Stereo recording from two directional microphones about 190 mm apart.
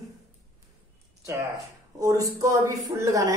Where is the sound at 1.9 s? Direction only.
20° right (ahead or behind).